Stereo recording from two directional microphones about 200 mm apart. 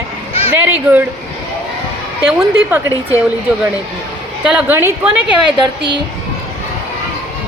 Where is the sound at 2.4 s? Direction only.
10° right (ahead or behind).